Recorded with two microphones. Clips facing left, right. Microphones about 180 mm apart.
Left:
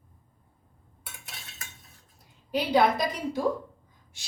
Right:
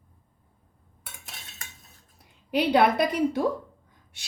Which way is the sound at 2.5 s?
65° right (ahead or behind).